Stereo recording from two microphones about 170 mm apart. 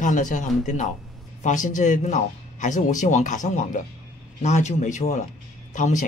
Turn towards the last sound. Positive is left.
turn(degrees=45)  # may be behind; listen again after turning